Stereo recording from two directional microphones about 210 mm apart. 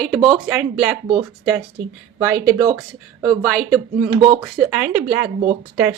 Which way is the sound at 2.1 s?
15° right (ahead or behind).